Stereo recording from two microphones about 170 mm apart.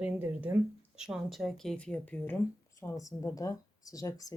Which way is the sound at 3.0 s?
20° left (ahead or behind).